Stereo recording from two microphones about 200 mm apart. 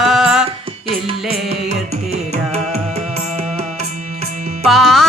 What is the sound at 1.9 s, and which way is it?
Music, 30° right (ahead or behind).